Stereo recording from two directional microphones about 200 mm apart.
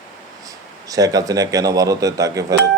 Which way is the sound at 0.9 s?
20° right (ahead or behind).